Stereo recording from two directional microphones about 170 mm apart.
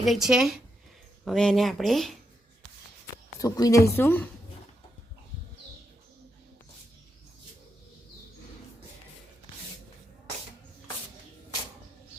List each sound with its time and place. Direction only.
0.0 s speech: centre (ahead or behind)
3.3 s a woman's voice: 20° left (ahead or behind)